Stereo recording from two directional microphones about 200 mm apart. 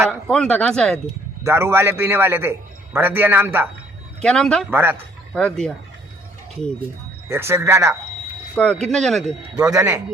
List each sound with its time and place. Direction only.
0.0 s speech: centre (ahead or behind)
1.5 s a man's voice: 10° right (ahead or behind)
4.2 s speech: 5° left (ahead or behind)
4.7 s a man's voice: 10° right (ahead or behind)
5.3 s speech: 5° left (ahead or behind)
7.3 s a man's voice: 15° right (ahead or behind)
8.8 s speech: centre (ahead or behind)
9.6 s a man's voice: 15° right (ahead or behind)